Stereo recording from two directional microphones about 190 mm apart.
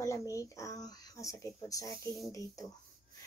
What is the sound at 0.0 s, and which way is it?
Speech, 15° left (ahead or behind).